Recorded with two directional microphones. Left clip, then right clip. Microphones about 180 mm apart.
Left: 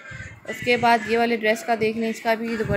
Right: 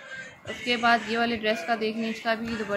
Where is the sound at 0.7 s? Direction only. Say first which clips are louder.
Left 5 dB; 20° left (ahead or behind).